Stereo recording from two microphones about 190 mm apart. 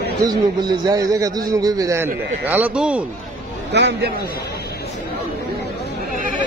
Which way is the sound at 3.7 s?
65° right (ahead or behind).